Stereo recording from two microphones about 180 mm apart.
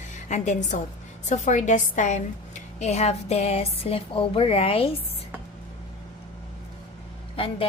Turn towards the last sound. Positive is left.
turn(degrees=30)  # may be behind; listen again after turning